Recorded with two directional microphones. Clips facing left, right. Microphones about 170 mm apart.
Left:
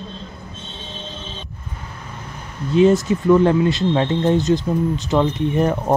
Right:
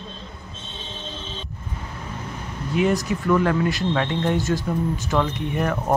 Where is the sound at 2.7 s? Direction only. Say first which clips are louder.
Left 7 dB; 30° left (ahead or behind).